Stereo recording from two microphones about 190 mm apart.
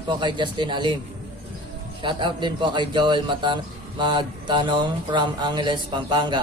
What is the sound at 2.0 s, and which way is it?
A man's voice, 25° right (ahead or behind).